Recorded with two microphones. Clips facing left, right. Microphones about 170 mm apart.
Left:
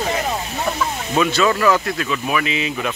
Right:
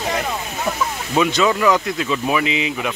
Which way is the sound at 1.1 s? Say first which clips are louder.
Even; 15° right (ahead or behind).